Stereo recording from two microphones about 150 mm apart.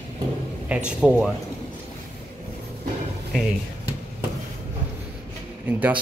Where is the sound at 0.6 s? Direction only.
10° right (ahead or behind).